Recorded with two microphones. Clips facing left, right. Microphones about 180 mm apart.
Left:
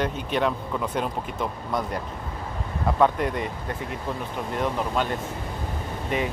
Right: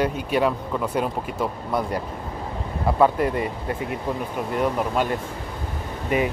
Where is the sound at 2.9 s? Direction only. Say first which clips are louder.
Right 3 dB; 5° right (ahead or behind).